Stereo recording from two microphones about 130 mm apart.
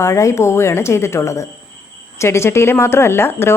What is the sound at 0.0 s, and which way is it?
Speech, 25° left (ahead or behind).